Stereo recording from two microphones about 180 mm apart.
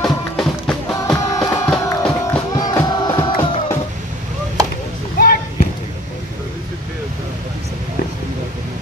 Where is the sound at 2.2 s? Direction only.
15° left (ahead or behind).